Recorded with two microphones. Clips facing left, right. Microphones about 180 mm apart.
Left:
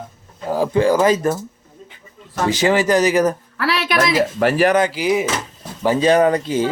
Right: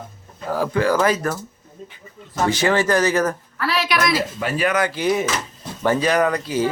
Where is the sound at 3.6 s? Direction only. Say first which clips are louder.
Left 2 dB; 70° left (ahead or behind).